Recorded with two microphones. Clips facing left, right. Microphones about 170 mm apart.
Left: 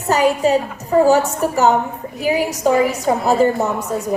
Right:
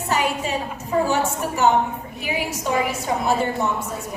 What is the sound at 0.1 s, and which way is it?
Speech, 40° left (ahead or behind).